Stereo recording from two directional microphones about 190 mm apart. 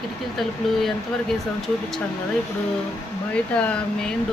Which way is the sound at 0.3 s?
Centre (ahead or behind).